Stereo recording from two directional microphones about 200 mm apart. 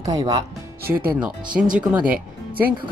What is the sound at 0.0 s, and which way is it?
Speech, 20° right (ahead or behind).